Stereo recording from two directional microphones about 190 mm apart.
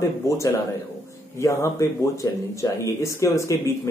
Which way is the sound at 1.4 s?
15° left (ahead or behind).